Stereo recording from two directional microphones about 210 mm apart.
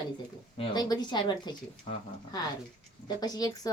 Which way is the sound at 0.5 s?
25° left (ahead or behind).